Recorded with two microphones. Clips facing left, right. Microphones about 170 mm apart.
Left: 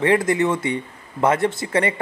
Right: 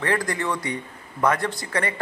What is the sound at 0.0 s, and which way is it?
Speech, 20° left (ahead or behind).